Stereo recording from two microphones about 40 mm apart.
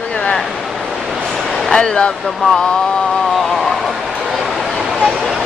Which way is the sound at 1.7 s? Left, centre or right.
Left.